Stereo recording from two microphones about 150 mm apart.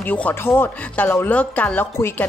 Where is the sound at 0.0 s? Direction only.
10° left (ahead or behind).